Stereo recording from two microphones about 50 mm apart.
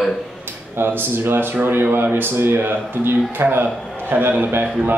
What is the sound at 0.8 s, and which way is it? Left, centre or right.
Speech, right.